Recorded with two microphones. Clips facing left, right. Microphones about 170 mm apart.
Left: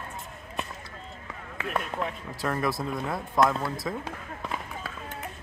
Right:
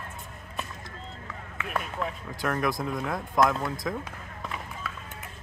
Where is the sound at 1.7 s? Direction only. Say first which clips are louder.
Left 1 dB; centre (ahead or behind).